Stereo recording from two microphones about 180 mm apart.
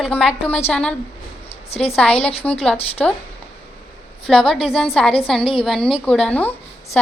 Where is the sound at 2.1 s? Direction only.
35° left (ahead or behind).